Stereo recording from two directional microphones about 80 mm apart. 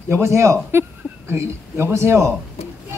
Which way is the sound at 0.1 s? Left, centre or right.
Right.